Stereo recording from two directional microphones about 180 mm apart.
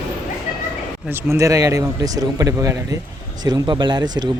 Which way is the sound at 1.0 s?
15° right (ahead or behind).